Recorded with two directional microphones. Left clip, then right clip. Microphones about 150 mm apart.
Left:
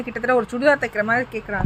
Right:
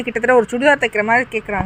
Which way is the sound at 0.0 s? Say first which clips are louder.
Right 6 dB; 40° right (ahead or behind).